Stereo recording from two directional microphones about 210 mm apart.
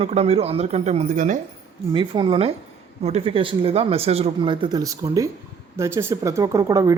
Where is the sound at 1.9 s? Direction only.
25° right (ahead or behind).